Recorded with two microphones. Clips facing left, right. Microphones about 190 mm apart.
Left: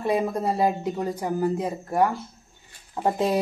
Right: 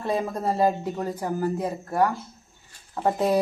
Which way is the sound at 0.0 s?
10° left (ahead or behind).